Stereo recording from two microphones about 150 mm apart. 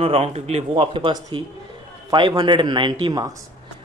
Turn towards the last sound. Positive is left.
turn(degrees=-25)  # may be behind; listen again after turning